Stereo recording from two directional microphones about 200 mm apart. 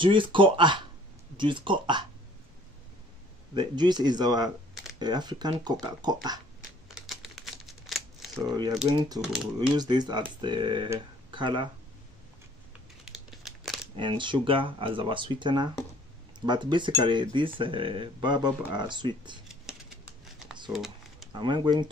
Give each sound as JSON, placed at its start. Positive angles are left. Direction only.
{"t": 0.0, "sound": "speech", "side_deg": -25}
{"t": 3.5, "sound": "speech", "side_deg": -20}
{"t": 6.9, "sound": "crumpling", "side_deg": 0}
{"t": 8.5, "sound": "speech", "side_deg": -20}
{"t": 9.2, "sound": "speech", "side_deg": 0}
{"t": 9.8, "sound": "speech", "side_deg": -20}
{"t": 13.0, "sound": "crumpling", "side_deg": 0}
{"t": 13.9, "sound": "speech", "side_deg": -25}
{"t": 20.7, "sound": "typing", "side_deg": 0}
{"t": 21.3, "sound": "speech", "side_deg": -25}